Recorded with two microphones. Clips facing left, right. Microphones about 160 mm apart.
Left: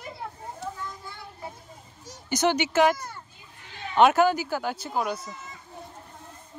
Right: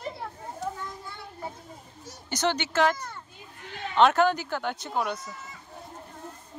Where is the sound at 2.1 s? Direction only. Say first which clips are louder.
Left 3 dB; 10° left (ahead or behind).